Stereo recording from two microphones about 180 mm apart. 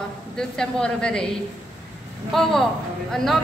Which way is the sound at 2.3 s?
Centre (ahead or behind).